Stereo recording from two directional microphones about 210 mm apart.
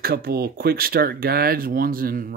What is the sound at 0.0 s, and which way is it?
Speech, 45° right (ahead or behind).